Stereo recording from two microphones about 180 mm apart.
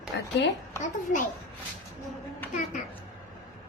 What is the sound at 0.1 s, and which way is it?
Speech, 85° left.